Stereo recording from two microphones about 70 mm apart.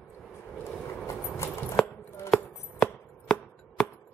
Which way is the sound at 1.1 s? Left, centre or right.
Left.